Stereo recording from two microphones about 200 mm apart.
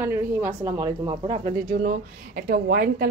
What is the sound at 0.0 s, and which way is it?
Speech, 10° right (ahead or behind).